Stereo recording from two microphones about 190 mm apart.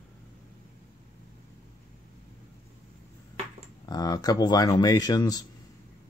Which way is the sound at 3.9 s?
20° left (ahead or behind).